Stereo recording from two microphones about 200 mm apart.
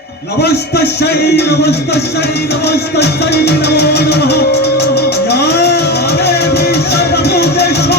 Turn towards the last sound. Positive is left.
turn(degrees=55)  # may be behind; listen again after turning